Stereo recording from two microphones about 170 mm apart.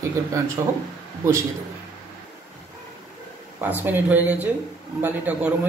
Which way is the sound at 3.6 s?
10° right (ahead or behind).